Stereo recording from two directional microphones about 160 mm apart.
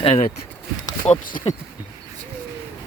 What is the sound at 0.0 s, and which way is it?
Speech, 40° left (ahead or behind).